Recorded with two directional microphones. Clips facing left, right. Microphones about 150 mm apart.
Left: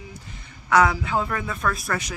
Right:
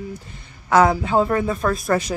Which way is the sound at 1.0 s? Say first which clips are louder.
Right 7 dB; 35° right (ahead or behind).